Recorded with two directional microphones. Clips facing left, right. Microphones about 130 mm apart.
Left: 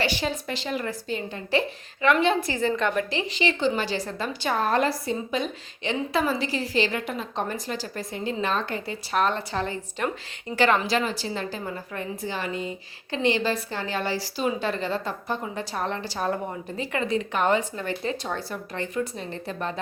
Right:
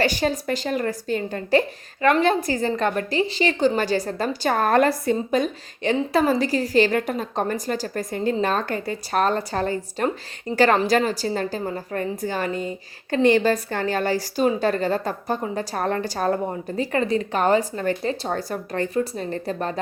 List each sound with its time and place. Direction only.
0.0 s a woman's voice: 45° right (ahead or behind)